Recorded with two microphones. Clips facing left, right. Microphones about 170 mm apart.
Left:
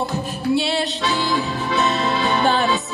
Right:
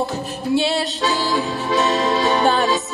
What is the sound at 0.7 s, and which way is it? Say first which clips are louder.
Music: right 1 dB; 40° right (ahead or behind).